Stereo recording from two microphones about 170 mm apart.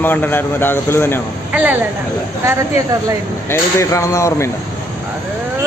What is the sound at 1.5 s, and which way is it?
Speech, 10° right (ahead or behind).